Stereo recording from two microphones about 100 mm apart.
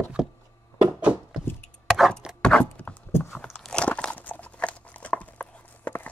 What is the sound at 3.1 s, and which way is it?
Biting, 25° left (ahead or behind).